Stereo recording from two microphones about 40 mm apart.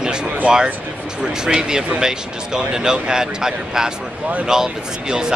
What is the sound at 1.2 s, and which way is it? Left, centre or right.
Speech, centre.